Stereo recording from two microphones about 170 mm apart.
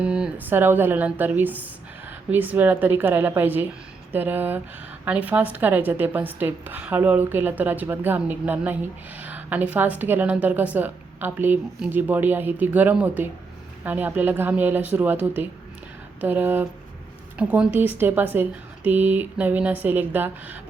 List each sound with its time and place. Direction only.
0.0 s a woman's voice: 5° right (ahead or behind)
16.2 s a woman's voice: 10° right (ahead or behind)